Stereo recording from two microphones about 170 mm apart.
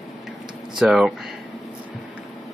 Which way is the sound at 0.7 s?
Centre (ahead or behind).